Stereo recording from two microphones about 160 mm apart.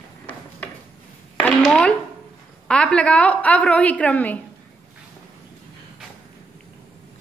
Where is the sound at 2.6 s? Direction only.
5° left (ahead or behind).